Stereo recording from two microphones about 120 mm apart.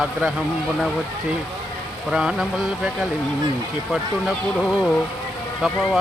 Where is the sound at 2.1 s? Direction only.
5° right (ahead or behind).